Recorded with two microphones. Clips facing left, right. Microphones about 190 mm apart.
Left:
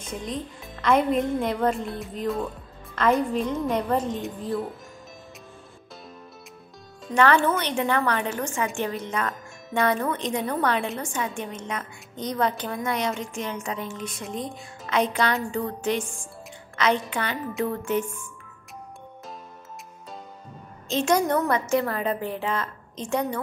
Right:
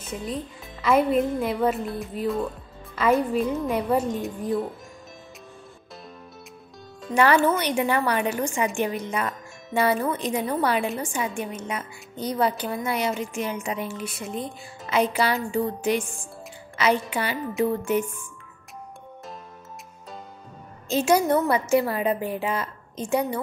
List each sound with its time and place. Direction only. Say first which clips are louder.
0.0 s speech: right 1 dB; 5° right (ahead or behind)
7.1 s speech: right 1 dB; 10° right (ahead or behind)
20.9 s speech: right 2 dB; 10° right (ahead or behind)